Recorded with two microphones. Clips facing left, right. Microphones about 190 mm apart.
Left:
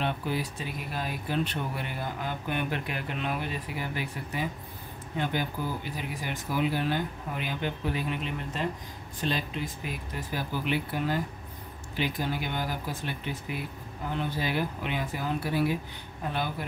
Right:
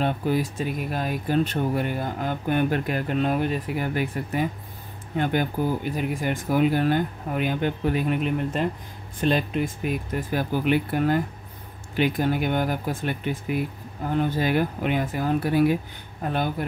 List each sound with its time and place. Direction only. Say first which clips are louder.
0.0 s speech: right 7 dB; 45° right (ahead or behind)